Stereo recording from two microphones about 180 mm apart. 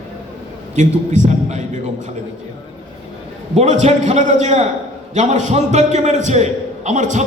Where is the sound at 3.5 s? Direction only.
40° right (ahead or behind).